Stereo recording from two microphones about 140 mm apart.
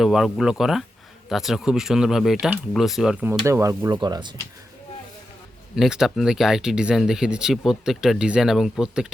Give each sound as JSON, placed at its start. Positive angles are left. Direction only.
{"t": 0.0, "sound": "speech", "side_deg": 0}
{"t": 3.4, "sound": "speech", "side_deg": -20}
{"t": 5.7, "sound": "speech", "side_deg": -5}